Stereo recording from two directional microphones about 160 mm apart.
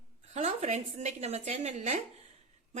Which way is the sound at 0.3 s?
45° right (ahead or behind).